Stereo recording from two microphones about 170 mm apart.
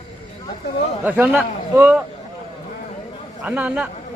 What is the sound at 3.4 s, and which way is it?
Speech, 10° right (ahead or behind).